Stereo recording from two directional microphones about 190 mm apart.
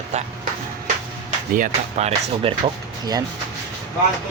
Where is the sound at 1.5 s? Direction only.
40° right (ahead or behind).